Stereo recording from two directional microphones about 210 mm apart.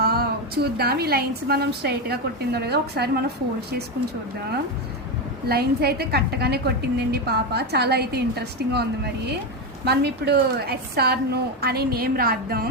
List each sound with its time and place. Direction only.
0.0 s a woman's voice: 45° right (ahead or behind)
5.5 s a woman's voice: 50° right (ahead or behind)